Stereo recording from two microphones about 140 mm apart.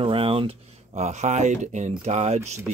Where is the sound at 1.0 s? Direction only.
55° right (ahead or behind).